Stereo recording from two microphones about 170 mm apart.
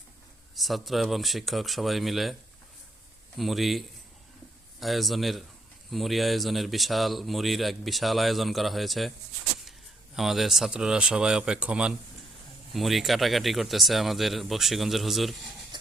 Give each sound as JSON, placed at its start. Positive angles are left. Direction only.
{"t": 0.5, "sound": "speech", "side_deg": 0}
{"t": 3.3, "sound": "speech", "side_deg": 0}
{"t": 10.2, "sound": "speech", "side_deg": 0}
{"t": 15.7, "sound": "a sound", "side_deg": -25}